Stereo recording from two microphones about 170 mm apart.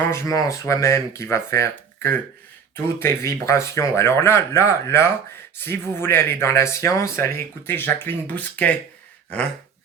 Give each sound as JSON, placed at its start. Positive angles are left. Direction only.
{"t": 0.1, "sound": "speech", "side_deg": 15}